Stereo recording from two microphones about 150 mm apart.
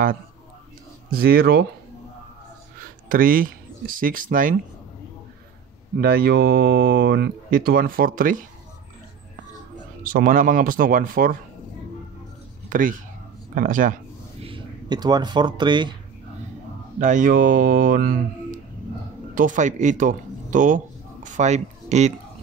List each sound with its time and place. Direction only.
1.1 s speech: 85° right
3.1 s speech: 70° right (ahead or behind)
5.9 s speech: 85° right; by 8.5 s 65° right (ahead or behind)
10.0 s speech: 65° right (ahead or behind)
12.6 s speech: 65° right (ahead or behind)
14.4 s speech: 30° right (ahead or behind)
17.0 s speech: 60° right (ahead or behind)